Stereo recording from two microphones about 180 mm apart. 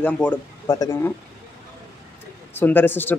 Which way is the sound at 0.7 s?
20° left (ahead or behind).